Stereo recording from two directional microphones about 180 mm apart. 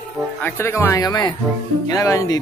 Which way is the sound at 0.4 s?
10° left (ahead or behind).